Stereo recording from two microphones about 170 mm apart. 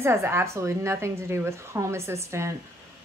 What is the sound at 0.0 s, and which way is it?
A woman's voice, 15° right (ahead or behind).